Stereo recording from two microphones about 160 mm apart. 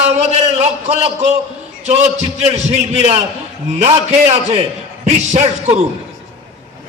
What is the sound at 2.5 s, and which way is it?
Speech, 40° right (ahead or behind).